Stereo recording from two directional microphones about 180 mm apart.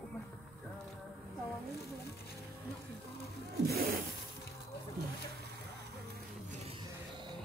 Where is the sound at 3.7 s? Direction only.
55° right (ahead or behind).